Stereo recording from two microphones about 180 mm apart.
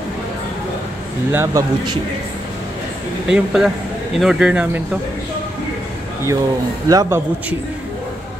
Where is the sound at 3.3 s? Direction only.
5° right (ahead or behind).